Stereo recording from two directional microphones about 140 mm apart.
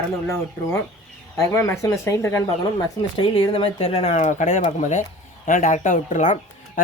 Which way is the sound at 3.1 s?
40° left (ahead or behind).